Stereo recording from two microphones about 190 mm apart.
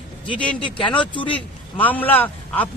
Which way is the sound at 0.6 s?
25° left (ahead or behind).